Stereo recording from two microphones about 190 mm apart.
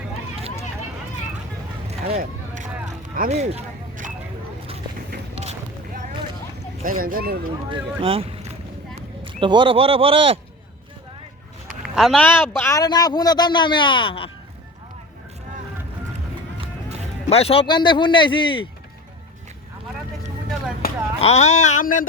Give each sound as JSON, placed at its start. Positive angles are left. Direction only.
{"t": 1.9, "sound": "vehicle", "side_deg": -35}
{"t": 3.2, "sound": "a sound", "side_deg": -35}
{"t": 6.8, "sound": "speech", "side_deg": -50}
{"t": 7.7, "sound": "speech", "side_deg": -30}
{"t": 11.7, "sound": "a man's voice", "side_deg": 0}
{"t": 17.2, "sound": "a man's voice", "side_deg": 30}
{"t": 21.2, "sound": "speech", "side_deg": 35}